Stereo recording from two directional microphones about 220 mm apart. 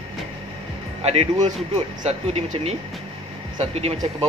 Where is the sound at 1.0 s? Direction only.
25° right (ahead or behind).